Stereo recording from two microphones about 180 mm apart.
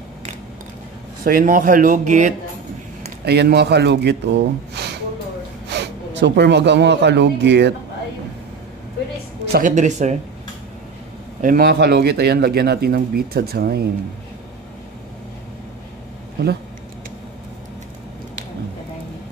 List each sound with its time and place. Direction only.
1.2 s speech: 50° right (ahead or behind)
3.3 s speech: 65° right (ahead or behind)
9.5 s speech: 45° right (ahead or behind)
11.4 s speech: 60° right (ahead or behind)